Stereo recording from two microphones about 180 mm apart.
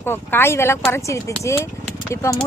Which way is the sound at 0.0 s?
10° left (ahead or behind).